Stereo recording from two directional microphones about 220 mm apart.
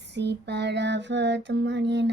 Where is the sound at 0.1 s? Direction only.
50° right (ahead or behind).